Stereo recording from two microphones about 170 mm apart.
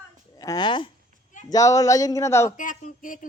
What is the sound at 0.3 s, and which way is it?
Speech, 25° left (ahead or behind).